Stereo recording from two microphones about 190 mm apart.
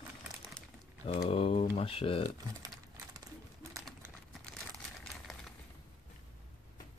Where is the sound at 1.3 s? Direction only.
30° left (ahead or behind).